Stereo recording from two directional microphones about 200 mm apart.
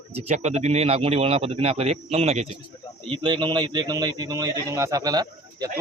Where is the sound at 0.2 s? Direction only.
35° right (ahead or behind).